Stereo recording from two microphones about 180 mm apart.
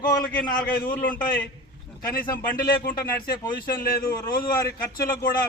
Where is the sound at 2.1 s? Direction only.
55° left (ahead or behind).